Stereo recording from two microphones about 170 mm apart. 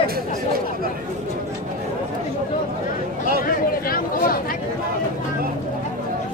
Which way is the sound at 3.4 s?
55° left (ahead or behind).